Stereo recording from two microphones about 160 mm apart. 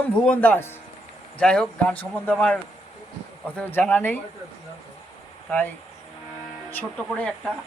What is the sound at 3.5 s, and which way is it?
Speech, 10° left (ahead or behind).